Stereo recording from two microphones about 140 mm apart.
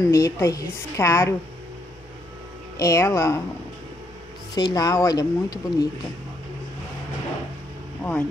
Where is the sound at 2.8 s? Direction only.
25° left (ahead or behind).